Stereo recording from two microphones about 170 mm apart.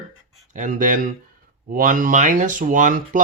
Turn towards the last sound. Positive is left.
turn(degrees=-50)  # may be behind; listen again after turning